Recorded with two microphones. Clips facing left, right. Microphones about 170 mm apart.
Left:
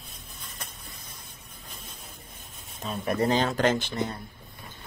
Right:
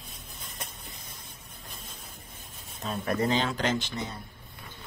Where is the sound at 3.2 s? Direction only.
40° left (ahead or behind).